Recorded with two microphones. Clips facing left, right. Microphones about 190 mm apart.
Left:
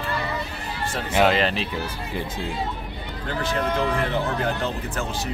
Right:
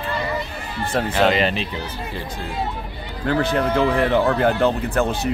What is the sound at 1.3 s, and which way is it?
Speech, centre (ahead or behind).